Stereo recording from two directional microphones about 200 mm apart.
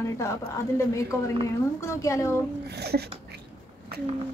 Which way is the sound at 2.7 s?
55° right (ahead or behind).